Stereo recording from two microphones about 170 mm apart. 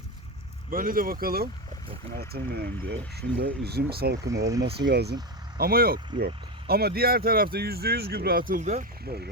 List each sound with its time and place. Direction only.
0.7 s speech: 55° right (ahead or behind)
4.3 s speech: 20° right (ahead or behind)
4.9 s speech: 75° right (ahead or behind)
5.5 s speech: 60° right (ahead or behind)
9.0 s speech: 70° right (ahead or behind)